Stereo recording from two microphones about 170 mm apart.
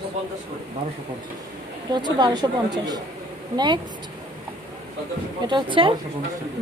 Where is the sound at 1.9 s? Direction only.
25° right (ahead or behind).